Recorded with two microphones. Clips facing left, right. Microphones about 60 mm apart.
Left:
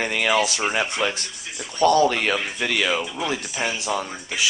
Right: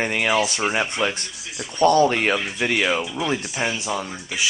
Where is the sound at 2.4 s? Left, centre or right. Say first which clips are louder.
Right 1 dB; centre.